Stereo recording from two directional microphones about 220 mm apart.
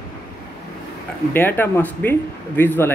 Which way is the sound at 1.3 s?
10° left (ahead or behind).